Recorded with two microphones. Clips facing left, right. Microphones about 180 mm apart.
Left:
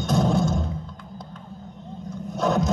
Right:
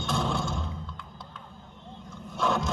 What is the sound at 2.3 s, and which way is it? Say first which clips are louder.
Scrape: left 5 dB; 40° left (ahead or behind).